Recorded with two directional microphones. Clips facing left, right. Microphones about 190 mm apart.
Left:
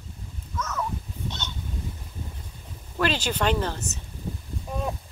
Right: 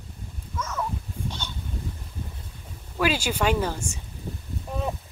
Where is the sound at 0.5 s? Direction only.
10° right (ahead or behind).